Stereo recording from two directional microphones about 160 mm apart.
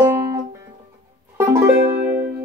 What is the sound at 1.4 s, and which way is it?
Music, 15° right (ahead or behind).